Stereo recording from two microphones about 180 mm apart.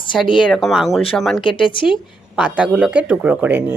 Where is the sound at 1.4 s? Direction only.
30° left (ahead or behind).